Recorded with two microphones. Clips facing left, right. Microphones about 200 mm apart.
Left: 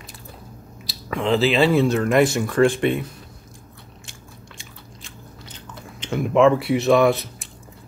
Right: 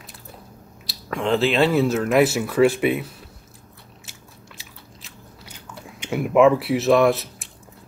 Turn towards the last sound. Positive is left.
turn(degrees=0)  # may be behind; listen again after turning